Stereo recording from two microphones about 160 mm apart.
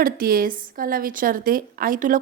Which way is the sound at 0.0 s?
65° right (ahead or behind).